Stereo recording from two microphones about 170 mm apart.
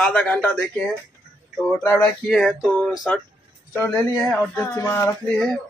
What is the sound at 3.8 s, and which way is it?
Speech, 15° left (ahead or behind).